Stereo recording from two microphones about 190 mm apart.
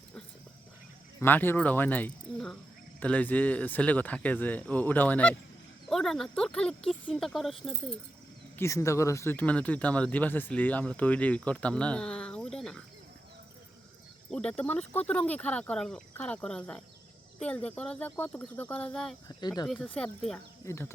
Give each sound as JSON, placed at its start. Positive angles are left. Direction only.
{"t": 1.2, "sound": "speech", "side_deg": 10}
{"t": 8.5, "sound": "speech", "side_deg": 15}
{"t": 14.3, "sound": "speech", "side_deg": 5}
{"t": 19.4, "sound": "speech", "side_deg": 20}
{"t": 19.6, "sound": "speech", "side_deg": 5}